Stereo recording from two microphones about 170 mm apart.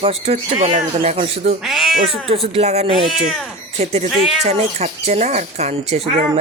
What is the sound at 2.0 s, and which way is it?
Speech, 35° right (ahead or behind).